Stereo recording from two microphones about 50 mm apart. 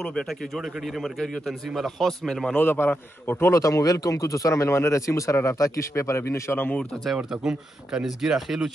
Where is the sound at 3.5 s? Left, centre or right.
Left.